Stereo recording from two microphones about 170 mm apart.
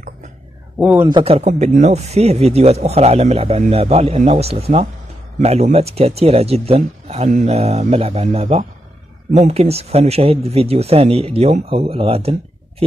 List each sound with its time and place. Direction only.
0.7 s a man's voice: 10° right (ahead or behind)
1.0 s speech: 30° right (ahead or behind)